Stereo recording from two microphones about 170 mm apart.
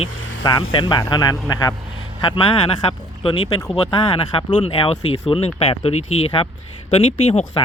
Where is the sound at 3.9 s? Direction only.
30° left (ahead or behind).